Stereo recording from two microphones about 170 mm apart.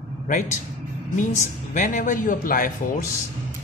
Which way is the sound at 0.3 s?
50° left (ahead or behind).